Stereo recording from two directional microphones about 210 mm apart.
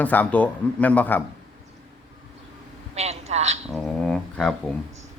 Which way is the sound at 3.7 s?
Centre (ahead or behind).